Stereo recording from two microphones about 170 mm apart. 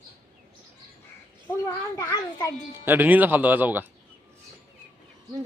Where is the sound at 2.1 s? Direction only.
25° left (ahead or behind).